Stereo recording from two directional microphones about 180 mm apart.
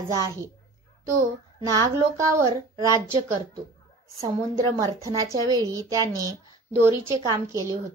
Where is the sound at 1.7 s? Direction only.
20° right (ahead or behind).